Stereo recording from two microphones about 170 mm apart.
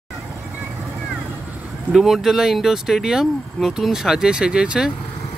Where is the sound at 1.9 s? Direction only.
Centre (ahead or behind).